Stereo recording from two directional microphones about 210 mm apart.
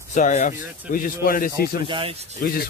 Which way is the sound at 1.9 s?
25° right (ahead or behind).